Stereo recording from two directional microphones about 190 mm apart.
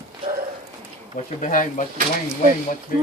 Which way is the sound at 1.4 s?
45° left (ahead or behind).